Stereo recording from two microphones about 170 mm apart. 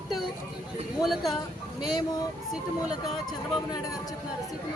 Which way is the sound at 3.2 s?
20° left (ahead or behind).